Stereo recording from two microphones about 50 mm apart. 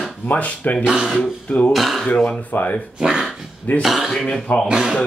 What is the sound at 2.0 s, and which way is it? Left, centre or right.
Speech, left.